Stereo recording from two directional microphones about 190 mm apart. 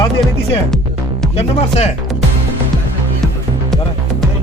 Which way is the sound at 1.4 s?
35° left (ahead or behind).